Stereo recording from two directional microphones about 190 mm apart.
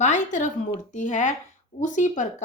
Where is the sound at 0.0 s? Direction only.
40° left (ahead or behind).